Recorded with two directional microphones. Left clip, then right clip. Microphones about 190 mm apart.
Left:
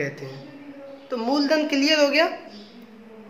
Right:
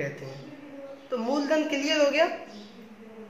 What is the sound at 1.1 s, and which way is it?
A woman's voice, 45° left (ahead or behind).